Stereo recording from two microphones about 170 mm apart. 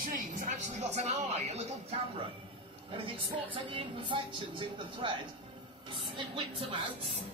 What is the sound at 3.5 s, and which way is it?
A woman's voice, 30° right (ahead or behind).